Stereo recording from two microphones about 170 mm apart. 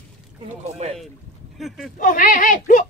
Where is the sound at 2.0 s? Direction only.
50° left (ahead or behind).